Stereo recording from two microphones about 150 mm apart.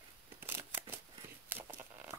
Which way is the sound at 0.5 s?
15° right (ahead or behind).